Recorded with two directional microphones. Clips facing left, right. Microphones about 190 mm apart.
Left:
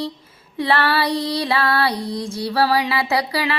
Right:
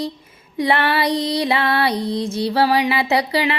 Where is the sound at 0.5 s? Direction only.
15° right (ahead or behind).